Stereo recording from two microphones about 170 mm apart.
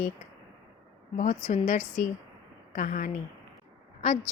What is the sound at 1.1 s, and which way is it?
Speech, 50° left (ahead or behind).